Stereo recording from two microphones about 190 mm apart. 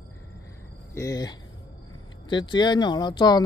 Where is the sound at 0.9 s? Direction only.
15° left (ahead or behind).